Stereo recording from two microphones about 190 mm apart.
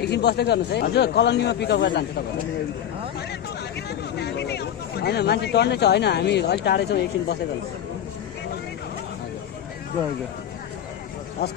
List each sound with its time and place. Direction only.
0.0 s a man's voice: 60° left (ahead or behind)
4.2 s speech: 60° left (ahead or behind)